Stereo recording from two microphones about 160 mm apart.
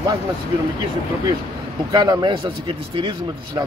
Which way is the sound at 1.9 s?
25° right (ahead or behind).